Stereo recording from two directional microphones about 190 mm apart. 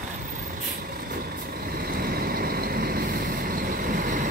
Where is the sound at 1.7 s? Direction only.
50° right (ahead or behind).